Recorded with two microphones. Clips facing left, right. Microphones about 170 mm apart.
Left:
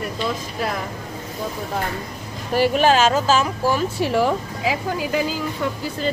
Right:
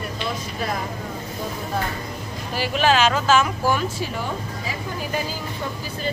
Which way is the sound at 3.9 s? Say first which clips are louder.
Left 8 dB; 80° left.